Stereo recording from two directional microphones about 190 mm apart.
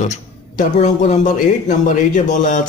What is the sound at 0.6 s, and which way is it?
A man's voice, 40° left (ahead or behind).